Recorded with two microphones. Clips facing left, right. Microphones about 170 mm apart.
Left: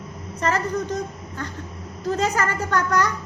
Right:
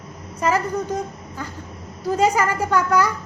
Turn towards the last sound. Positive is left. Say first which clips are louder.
# right 3 dB
turn(degrees=-10)  # may be behind; listen again after turning